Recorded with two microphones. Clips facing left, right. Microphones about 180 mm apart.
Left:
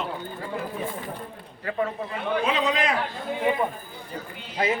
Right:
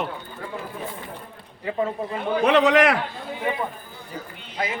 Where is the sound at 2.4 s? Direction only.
70° right (ahead or behind).